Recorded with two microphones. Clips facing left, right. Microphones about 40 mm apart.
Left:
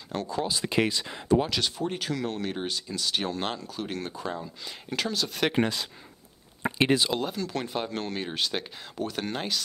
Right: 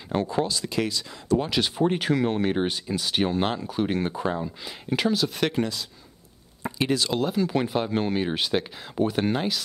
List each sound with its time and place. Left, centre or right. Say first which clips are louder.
0.1 s speech: right 6 dB; right
0.5 s speech: left 1 dB; left
1.8 s speech: right 7 dB; right; by 5.4 s centre
5.5 s speech: left 1 dB; left
6.6 s a sound: left 2 dB; left
7.1 s speech: right 4 dB; centre
7.3 s speech: right 7 dB; centre
8.9 s speech: right 8 dB; centre